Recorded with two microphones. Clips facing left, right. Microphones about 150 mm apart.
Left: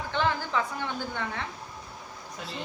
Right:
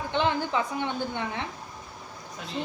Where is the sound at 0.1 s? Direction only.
20° right (ahead or behind).